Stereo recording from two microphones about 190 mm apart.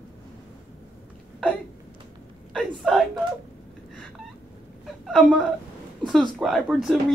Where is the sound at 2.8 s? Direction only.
Centre (ahead or behind).